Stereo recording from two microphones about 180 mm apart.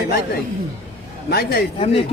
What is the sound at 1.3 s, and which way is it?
Speech, 60° left (ahead or behind).